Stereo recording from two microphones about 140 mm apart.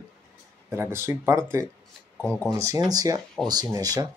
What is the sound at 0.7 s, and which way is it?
Speech, 20° right (ahead or behind).